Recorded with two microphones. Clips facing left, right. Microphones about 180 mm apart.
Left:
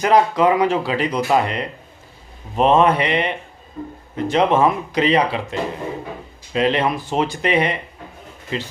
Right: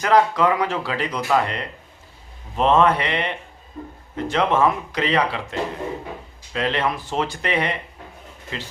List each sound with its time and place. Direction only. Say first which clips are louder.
0.0 s speech: left 2 dB; 15° left (ahead or behind)